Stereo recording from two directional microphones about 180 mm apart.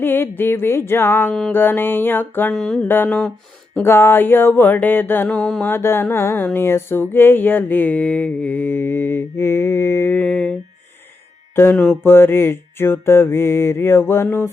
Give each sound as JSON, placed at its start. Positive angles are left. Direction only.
{"t": 0.0, "sound": "mantra", "side_deg": 10}
{"t": 11.5, "sound": "mantra", "side_deg": 10}